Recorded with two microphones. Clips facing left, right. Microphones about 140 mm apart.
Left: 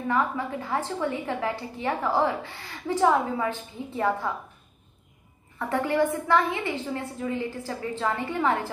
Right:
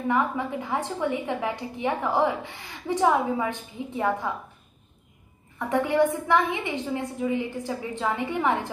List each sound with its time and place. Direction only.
0.1 s a woman's voice: 20° right (ahead or behind)
5.6 s a woman's voice: 15° right (ahead or behind)